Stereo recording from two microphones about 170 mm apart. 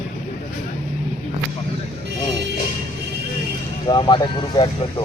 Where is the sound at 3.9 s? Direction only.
25° left (ahead or behind).